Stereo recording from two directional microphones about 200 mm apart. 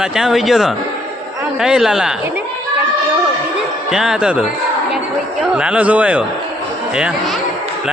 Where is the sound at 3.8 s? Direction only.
5° right (ahead or behind).